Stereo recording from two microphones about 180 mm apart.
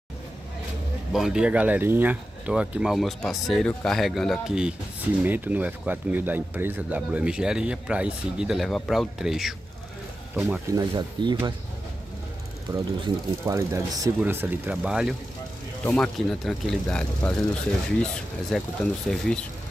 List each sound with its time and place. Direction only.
1.1 s speech: 5° right (ahead or behind)
10.7 s speech: 20° right (ahead or behind)
12.7 s speech: 20° right (ahead or behind); by 19.4 s 5° left (ahead or behind)